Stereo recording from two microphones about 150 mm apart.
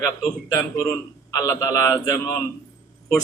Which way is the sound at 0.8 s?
20° left (ahead or behind).